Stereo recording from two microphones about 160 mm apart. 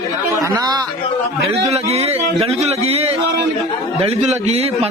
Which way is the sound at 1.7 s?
40° right (ahead or behind).